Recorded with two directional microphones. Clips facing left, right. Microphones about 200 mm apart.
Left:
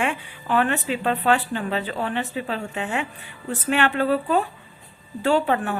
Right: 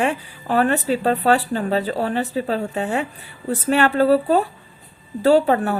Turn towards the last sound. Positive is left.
turn(degrees=-40)  # may be behind; listen again after turning